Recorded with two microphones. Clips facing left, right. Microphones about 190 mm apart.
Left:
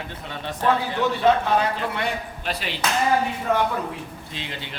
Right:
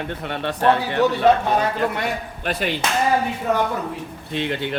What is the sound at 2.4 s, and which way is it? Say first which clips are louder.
Speech: right 7 dB; 50° right (ahead or behind).